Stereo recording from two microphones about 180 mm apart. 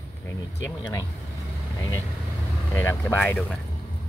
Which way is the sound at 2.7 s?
10° left (ahead or behind).